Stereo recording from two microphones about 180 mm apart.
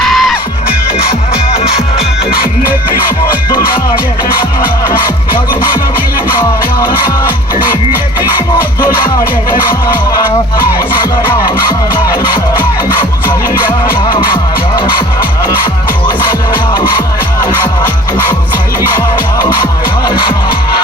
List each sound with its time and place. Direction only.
0.0 s music: centre (ahead or behind)
1.3 s music: 35° left (ahead or behind)
9.0 s music: 25° left (ahead or behind)
12.1 s music: 25° left (ahead or behind)
20.1 s music: 25° left (ahead or behind)